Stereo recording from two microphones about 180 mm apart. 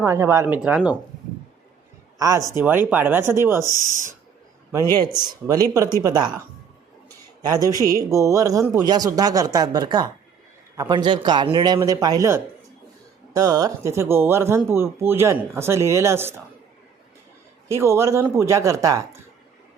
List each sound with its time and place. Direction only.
0.0 s speech: 15° right (ahead or behind)
2.1 s speech: 20° right (ahead or behind)
4.9 s a man's voice: 25° right (ahead or behind)
7.4 s a man's voice: 20° right (ahead or behind)
17.7 s speech: 15° right (ahead or behind)